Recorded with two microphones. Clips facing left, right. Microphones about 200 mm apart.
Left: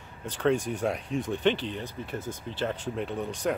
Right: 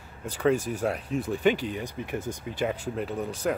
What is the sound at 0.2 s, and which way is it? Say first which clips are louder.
Speech: right 1 dB; 10° right (ahead or behind).